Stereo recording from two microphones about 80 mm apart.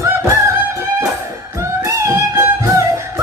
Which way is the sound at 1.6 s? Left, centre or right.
Right.